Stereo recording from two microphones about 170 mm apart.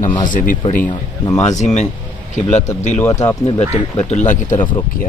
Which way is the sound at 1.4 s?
45° left (ahead or behind).